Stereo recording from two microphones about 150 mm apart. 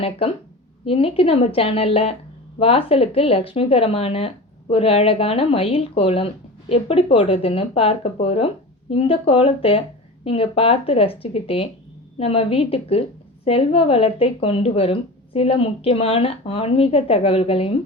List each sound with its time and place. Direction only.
0.0 s speech: 40° left (ahead or behind)